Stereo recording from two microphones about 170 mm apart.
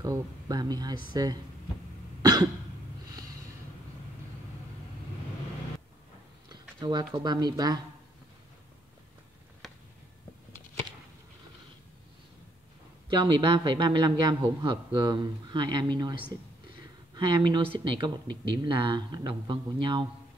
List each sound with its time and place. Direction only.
0.0 s a man's voice: 20° right (ahead or behind)
6.8 s a man's voice: 25° right (ahead or behind)
13.1 s a man's voice: 30° right (ahead or behind)